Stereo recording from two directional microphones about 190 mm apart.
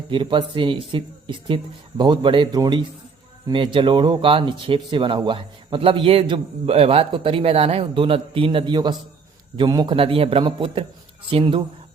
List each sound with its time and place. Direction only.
0.1 s speech: 25° right (ahead or behind)